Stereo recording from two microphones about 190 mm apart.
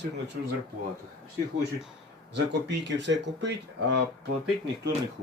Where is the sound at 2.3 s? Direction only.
65° right (ahead or behind).